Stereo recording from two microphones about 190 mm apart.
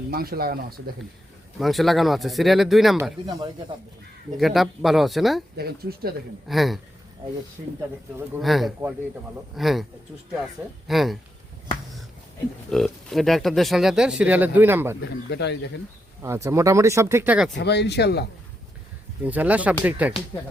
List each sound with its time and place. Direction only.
0.1 s speech: 50° right (ahead or behind)
1.5 s speech: centre (ahead or behind)
3.0 s speech: 20° right (ahead or behind)
4.4 s speech: centre (ahead or behind)
5.5 s speech: 55° right (ahead or behind)
6.5 s speech: centre (ahead or behind)
8.4 s speech: centre (ahead or behind)
12.7 s speech: centre (ahead or behind)
15.3 s speech: 60° left (ahead or behind)
16.2 s speech: 15° right (ahead or behind)
17.6 s speech: 65° left (ahead or behind)
19.2 s speech: 10° right (ahead or behind)